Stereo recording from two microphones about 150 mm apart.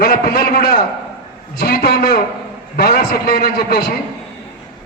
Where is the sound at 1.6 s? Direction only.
70° left (ahead or behind).